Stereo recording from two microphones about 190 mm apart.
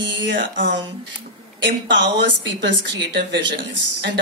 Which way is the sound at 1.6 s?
65° right (ahead or behind).